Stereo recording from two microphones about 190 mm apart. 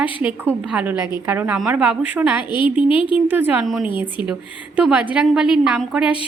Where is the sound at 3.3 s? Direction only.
10° right (ahead or behind).